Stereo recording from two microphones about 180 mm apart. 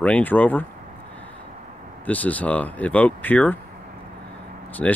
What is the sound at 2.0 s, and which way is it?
Speech, 10° left (ahead or behind).